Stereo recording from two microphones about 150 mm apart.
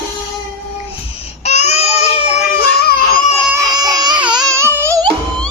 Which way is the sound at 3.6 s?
25° right (ahead or behind).